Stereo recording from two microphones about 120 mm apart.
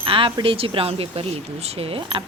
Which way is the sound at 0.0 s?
45° right (ahead or behind).